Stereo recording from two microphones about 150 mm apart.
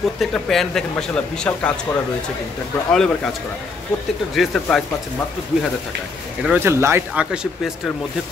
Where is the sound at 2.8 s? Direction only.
5° left (ahead or behind).